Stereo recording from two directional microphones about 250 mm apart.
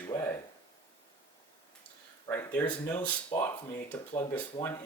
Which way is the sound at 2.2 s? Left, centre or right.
Centre.